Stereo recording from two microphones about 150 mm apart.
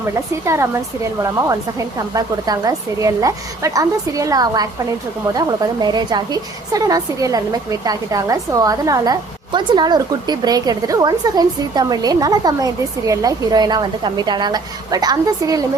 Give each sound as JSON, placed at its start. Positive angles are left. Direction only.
{"t": 0.4, "sound": "speech", "side_deg": -15}
{"t": 2.1, "sound": "a woman's voice", "side_deg": -25}